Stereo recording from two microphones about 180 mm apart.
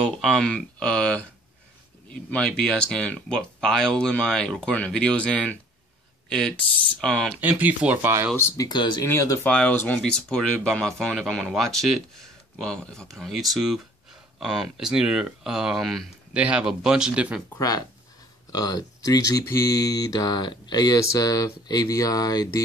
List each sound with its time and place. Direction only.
0.0 s speech: 5° left (ahead or behind)
7.3 s speech: 10° right (ahead or behind)
8.4 s speech: 20° left (ahead or behind); by 17.4 s 5° right (ahead or behind)
17.6 s speech: 20° left (ahead or behind)